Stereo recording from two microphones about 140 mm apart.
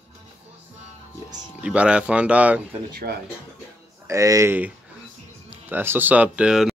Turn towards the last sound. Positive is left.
turn(degrees=-5)  # may be behind; listen again after turning